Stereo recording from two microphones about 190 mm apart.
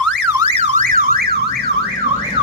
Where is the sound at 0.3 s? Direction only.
30° right (ahead or behind); by 1.7 s 55° right (ahead or behind).